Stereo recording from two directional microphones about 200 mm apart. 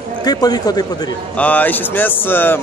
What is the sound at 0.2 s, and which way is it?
Speech, 20° left (ahead or behind).